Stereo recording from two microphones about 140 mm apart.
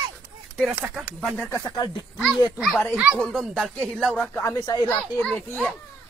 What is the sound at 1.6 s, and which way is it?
Speech, 30° left (ahead or behind).